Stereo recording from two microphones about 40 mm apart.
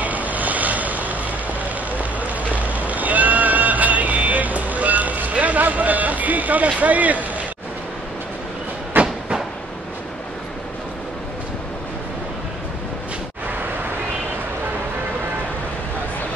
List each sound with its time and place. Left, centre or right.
0.0 s vehicle: right
1.9 s a sound: right
9.0 s train: right